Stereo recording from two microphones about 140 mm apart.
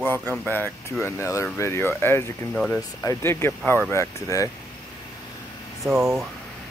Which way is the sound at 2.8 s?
20° left (ahead or behind).